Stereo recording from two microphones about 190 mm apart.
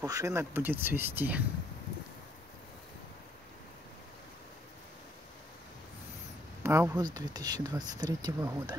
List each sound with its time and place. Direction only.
0.0 s speech: 15° right (ahead or behind)
6.6 s speech: 10° right (ahead or behind)